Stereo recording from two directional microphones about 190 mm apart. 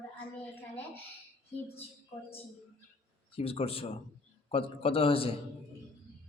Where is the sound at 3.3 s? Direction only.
30° left (ahead or behind).